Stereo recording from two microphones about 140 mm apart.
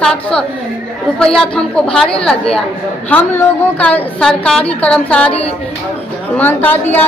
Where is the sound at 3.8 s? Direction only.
10° left (ahead or behind).